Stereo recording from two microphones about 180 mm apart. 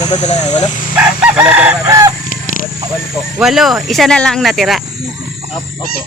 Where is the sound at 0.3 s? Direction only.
35° left (ahead or behind).